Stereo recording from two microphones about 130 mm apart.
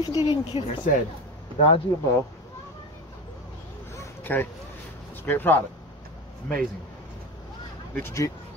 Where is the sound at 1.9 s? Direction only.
30° left (ahead or behind).